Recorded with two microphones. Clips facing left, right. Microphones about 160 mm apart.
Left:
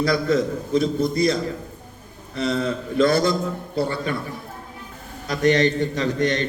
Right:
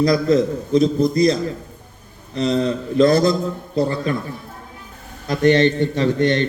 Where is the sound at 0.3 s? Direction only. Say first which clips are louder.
Right 4 dB; 35° right (ahead or behind).